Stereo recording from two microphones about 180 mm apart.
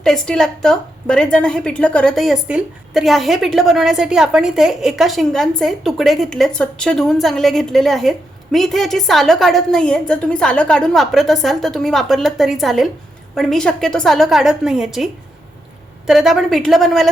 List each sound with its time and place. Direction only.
0.0 s a woman's voice: 5° left (ahead or behind)